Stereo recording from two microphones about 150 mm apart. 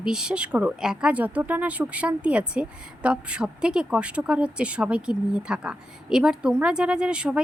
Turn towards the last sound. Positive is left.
turn(degrees=-5)  # may be behind; listen again after turning